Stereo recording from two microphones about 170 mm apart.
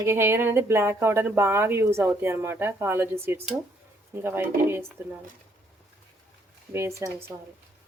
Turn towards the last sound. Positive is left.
turn(degrees=-15)  # may be behind; listen again after turning